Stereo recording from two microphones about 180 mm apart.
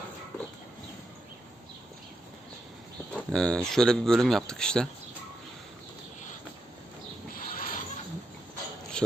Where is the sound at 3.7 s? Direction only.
5° left (ahead or behind).